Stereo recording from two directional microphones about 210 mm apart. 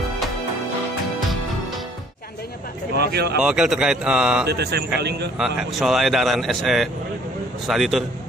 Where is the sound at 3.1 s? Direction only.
50° right (ahead or behind).